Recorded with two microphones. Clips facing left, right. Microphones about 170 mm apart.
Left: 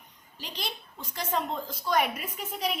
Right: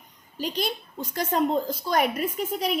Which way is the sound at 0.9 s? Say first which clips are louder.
Right 6 dB; 45° right (ahead or behind).